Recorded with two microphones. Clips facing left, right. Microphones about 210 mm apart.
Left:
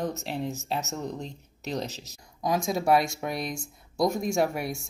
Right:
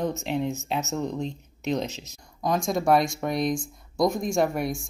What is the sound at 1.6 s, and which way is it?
Speech, 40° left (ahead or behind).